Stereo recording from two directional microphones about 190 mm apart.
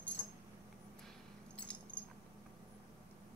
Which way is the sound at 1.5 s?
5° left (ahead or behind).